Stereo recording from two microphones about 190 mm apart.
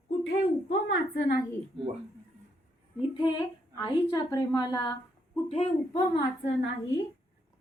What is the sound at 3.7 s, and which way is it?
A woman's voice, 20° left (ahead or behind).